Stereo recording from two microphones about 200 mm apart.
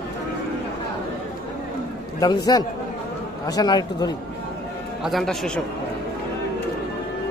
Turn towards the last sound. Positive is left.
turn(degrees=5)  # may be behind; listen again after turning